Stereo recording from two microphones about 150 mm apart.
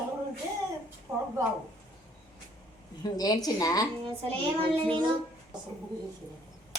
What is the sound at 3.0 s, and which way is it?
Speech, 25° left (ahead or behind).